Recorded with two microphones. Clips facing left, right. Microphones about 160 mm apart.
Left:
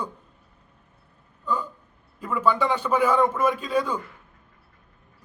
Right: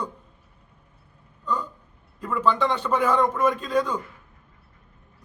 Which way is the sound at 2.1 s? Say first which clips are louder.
Even; 10° left (ahead or behind).